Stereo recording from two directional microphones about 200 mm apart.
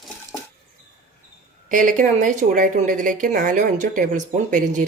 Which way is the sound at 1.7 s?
40° right (ahead or behind).